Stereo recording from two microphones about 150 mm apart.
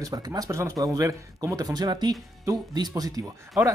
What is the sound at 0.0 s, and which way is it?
A man's voice, 25° right (ahead or behind).